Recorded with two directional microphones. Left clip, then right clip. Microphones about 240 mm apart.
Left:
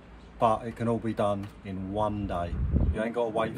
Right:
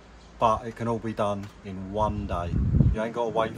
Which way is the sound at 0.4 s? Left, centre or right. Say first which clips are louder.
Right 2 dB; centre.